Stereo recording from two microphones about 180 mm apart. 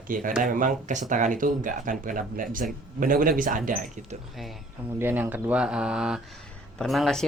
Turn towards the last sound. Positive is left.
turn(degrees=0)  # may be behind; listen again after turning